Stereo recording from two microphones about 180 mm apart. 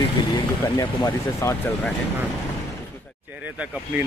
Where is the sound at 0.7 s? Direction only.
20° left (ahead or behind).